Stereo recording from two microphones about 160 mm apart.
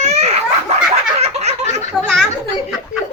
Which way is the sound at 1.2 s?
40° right (ahead or behind).